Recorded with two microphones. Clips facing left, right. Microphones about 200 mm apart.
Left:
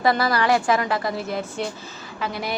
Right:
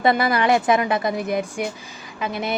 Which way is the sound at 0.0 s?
20° right (ahead or behind).